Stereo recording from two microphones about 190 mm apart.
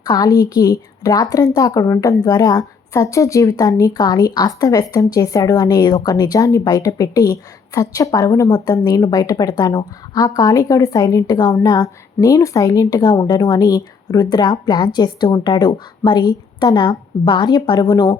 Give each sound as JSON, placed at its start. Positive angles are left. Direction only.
{"t": 0.0, "sound": "a woman's voice", "side_deg": 20}